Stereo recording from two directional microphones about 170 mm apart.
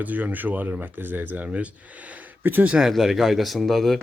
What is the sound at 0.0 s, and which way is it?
Speech, 10° right (ahead or behind).